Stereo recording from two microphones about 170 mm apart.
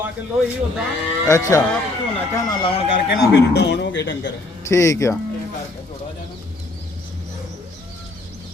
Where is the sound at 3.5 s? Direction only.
90° left.